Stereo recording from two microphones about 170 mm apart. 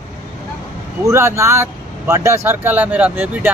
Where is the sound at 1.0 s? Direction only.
15° right (ahead or behind).